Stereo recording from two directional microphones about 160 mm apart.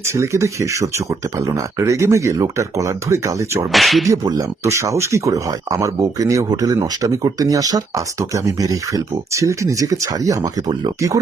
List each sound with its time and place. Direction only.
0.0 s speech: 15° right (ahead or behind)
3.7 s whip: centre (ahead or behind)
4.1 s speech: 20° right (ahead or behind)